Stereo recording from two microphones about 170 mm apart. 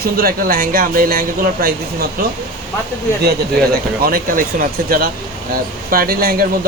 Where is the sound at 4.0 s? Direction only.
60° right (ahead or behind).